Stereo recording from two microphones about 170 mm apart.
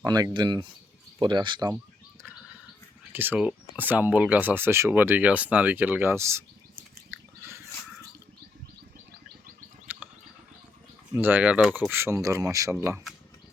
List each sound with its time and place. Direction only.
0.0 s speech: 25° right (ahead or behind)
3.1 s speech: 10° right (ahead or behind)
9.8 s a sound: 10° right (ahead or behind)
11.1 s speech: 10° right (ahead or behind)